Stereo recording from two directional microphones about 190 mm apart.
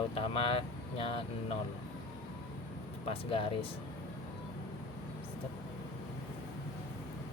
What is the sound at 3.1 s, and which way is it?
Speech, 30° left (ahead or behind).